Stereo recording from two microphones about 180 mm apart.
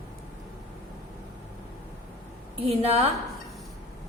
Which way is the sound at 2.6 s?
35° right (ahead or behind).